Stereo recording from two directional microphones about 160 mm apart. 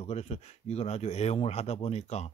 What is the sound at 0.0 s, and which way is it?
A man's voice, 40° left (ahead or behind).